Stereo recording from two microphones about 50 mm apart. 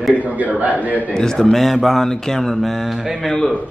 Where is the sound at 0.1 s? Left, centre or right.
Right.